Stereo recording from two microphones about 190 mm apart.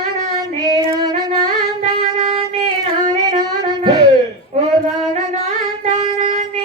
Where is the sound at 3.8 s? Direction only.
20° right (ahead or behind).